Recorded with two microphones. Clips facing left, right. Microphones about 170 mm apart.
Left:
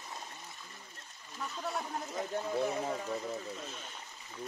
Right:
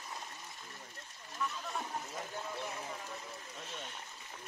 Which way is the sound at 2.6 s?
55° left (ahead or behind).